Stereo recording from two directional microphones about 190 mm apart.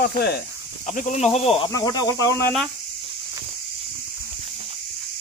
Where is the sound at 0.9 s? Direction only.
40° left (ahead or behind).